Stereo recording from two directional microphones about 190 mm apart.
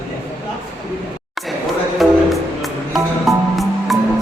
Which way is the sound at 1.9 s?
Centre (ahead or behind).